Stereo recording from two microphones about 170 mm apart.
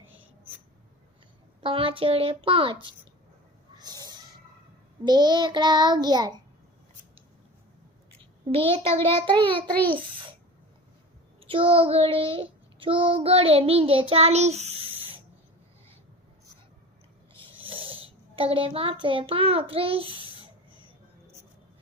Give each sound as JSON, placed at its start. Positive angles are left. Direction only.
{"t": 1.6, "sound": "child singing", "side_deg": -30}
{"t": 3.8, "sound": "cat", "side_deg": -25}
{"t": 5.0, "sound": "child singing", "side_deg": -25}
{"t": 8.5, "sound": "child singing", "side_deg": -35}
{"t": 9.9, "sound": "a child's voice", "side_deg": -30}
{"t": 11.3, "sound": "child singing", "side_deg": -30}
{"t": 17.3, "sound": "a sound", "side_deg": -30}